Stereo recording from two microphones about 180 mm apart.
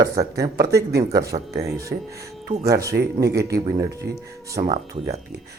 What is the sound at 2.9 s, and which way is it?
Speech, 65° right (ahead or behind).